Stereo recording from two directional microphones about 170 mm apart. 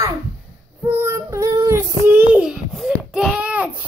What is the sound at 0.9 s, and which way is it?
Child singing, 15° right (ahead or behind).